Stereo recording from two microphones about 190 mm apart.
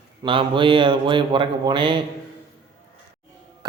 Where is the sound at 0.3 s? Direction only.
25° right (ahead or behind).